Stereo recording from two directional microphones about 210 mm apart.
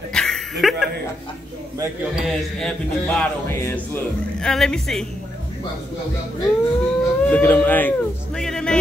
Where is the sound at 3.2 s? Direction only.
10° left (ahead or behind).